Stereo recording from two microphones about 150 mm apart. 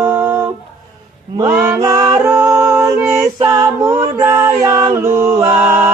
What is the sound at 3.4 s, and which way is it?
Music, 25° right (ahead or behind).